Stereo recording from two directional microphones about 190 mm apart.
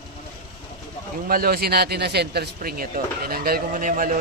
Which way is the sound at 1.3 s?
50° right (ahead or behind).